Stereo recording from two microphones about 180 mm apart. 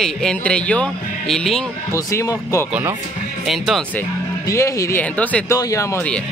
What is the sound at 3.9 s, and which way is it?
Speech, 15° left (ahead or behind).